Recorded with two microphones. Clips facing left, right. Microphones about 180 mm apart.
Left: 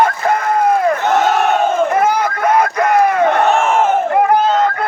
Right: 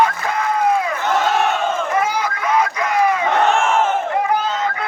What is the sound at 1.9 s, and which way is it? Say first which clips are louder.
Crowd: left 5 dB; 55° left (ahead or behind).